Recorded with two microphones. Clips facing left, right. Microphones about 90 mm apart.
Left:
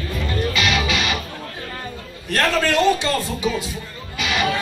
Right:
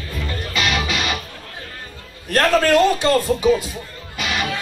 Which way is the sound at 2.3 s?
45° right (ahead or behind).